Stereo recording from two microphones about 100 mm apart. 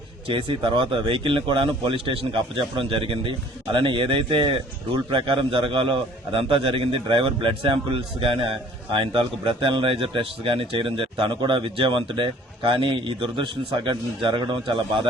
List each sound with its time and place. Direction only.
0.3 s a man's voice: 60° right (ahead or behind)